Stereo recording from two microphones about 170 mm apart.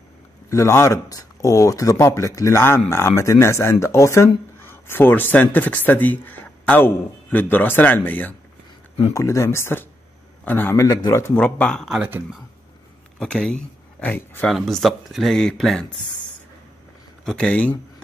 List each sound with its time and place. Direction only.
0.5 s speech: 15° left (ahead or behind)
14.5 s speech: centre (ahead or behind)
17.2 s speech: 5° left (ahead or behind)